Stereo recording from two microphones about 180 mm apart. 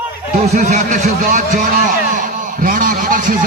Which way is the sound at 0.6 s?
40° right (ahead or behind).